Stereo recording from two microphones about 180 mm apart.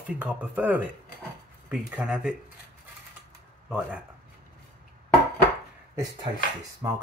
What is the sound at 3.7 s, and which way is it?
Speech, 5° right (ahead or behind).